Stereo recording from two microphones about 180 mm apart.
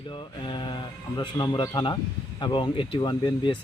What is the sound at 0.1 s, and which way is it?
Speech, 25° left (ahead or behind).